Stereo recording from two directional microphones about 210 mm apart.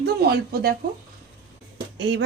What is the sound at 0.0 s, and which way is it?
Speech, 50° right (ahead or behind).